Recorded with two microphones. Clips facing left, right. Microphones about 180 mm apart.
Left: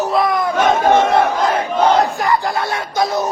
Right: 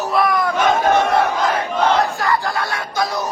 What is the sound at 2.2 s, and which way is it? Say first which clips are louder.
Music: left 2 dB; 20° left (ahead or behind).